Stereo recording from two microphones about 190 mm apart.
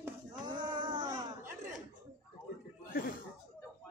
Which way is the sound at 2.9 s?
50° left (ahead or behind).